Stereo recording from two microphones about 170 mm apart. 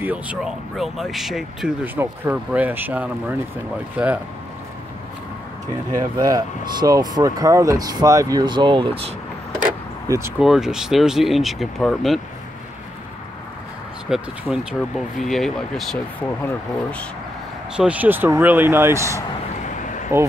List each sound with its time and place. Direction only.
0.0 s speech: 10° right (ahead or behind)
5.9 s speech: 20° right (ahead or behind)
10.0 s speech: 20° right (ahead or behind)
10.4 s speech: 5° right (ahead or behind)
14.0 s speech: 5° right (ahead or behind)
17.7 s speech: 10° right (ahead or behind)
19.8 s a sound: 50° left (ahead or behind)